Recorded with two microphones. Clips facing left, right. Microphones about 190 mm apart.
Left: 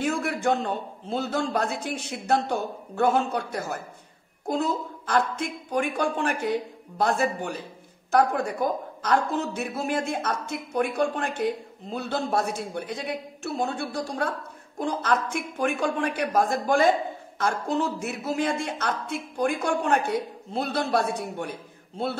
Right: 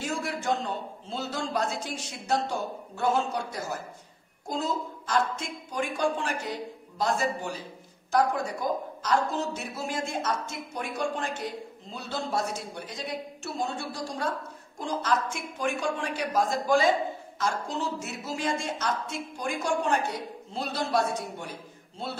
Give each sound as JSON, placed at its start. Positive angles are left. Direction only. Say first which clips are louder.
{"t": 0.0, "sound": "a woman's voice", "louder": "left 6 dB", "side_deg": 60}